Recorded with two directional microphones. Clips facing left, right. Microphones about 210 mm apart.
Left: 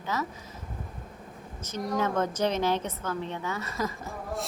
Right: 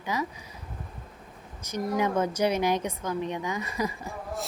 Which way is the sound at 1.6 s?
15° right (ahead or behind).